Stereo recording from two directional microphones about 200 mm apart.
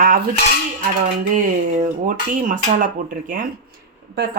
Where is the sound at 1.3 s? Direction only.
40° right (ahead or behind).